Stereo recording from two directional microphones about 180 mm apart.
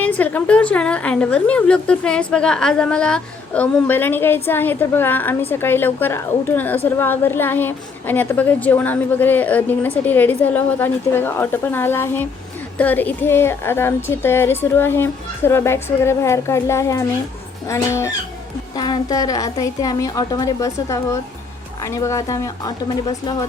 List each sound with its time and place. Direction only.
0.0 s a woman's voice: 10° left (ahead or behind); by 23.5 s 25° left (ahead or behind)